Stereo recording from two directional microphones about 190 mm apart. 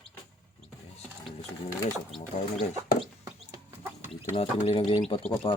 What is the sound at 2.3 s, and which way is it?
Speech, 35° left (ahead or behind).